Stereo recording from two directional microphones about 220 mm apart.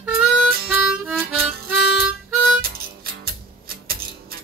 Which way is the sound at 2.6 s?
45° right (ahead or behind).